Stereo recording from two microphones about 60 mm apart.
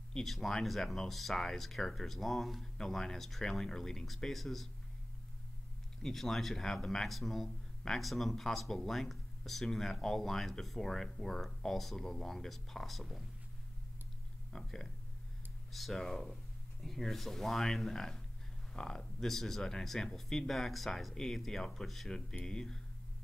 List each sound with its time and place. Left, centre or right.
0.1 s speech: centre
6.0 s speech: centre
14.5 s speech: centre